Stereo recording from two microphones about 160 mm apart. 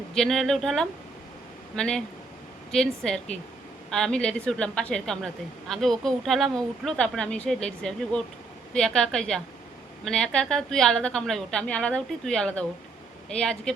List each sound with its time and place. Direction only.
0.2 s a woman's voice: centre (ahead or behind)